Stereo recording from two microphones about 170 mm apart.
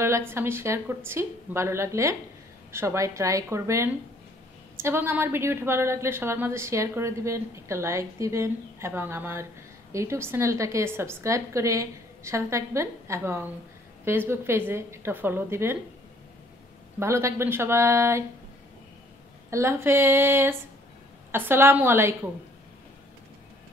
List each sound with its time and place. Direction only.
0.0 s a woman's voice: 15° right (ahead or behind)
17.0 s a woman's voice: 15° right (ahead or behind)
19.5 s a woman's voice: 15° right (ahead or behind)